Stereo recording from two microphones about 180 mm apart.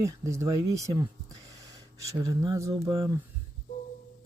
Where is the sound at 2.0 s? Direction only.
20° right (ahead or behind).